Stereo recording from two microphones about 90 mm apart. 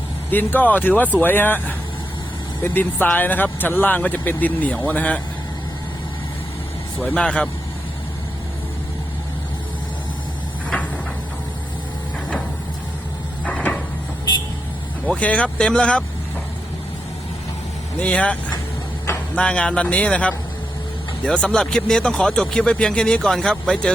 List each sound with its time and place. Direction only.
0.3 s speech: 20° left (ahead or behind)
7.0 s speech: 15° left (ahead or behind)
13.4 s a sound: 15° left (ahead or behind)
15.0 s speech: 10° left (ahead or behind)
18.0 s speech: 15° left (ahead or behind)
19.4 s speech: 10° left (ahead or behind)